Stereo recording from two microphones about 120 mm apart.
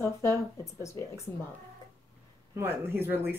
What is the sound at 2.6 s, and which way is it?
Speech, 20° right (ahead or behind).